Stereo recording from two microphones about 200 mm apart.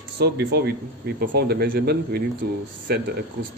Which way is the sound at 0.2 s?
55° right (ahead or behind).